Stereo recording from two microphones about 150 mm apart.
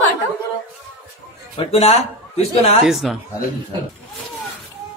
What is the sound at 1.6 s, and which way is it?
Speech, 45° left (ahead or behind).